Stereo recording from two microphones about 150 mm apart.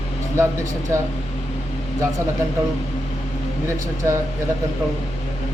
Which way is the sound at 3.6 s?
20° right (ahead or behind).